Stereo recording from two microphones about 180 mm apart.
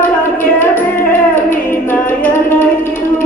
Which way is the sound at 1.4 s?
50° left (ahead or behind).